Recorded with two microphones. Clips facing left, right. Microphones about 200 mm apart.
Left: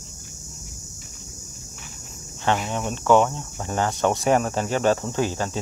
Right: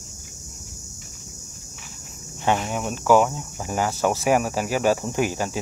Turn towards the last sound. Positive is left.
turn(degrees=-15)  # may be behind; listen again after turning